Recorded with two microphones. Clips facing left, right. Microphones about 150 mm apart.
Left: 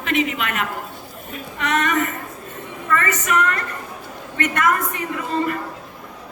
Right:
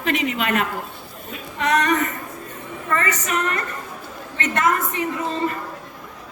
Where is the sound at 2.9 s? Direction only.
30° right (ahead or behind).